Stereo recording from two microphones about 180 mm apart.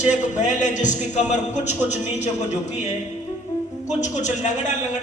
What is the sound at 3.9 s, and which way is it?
A man's voice, 40° left (ahead or behind).